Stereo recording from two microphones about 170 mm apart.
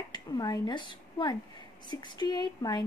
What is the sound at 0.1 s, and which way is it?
Speech, 25° left (ahead or behind).